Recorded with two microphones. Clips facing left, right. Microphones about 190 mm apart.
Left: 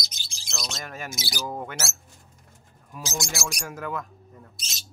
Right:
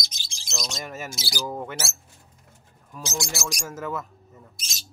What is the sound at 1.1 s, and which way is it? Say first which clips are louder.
Speech: even; 20° left (ahead or behind).